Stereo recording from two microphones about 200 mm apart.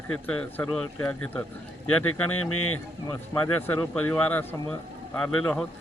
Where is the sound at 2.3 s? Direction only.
90° left.